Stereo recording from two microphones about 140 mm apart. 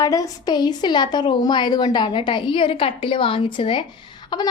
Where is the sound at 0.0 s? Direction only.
25° left (ahead or behind).